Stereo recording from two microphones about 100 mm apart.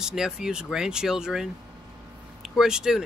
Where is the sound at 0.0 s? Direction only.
5° right (ahead or behind).